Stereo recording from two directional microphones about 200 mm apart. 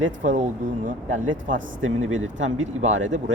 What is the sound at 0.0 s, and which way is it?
Speech, 40° right (ahead or behind).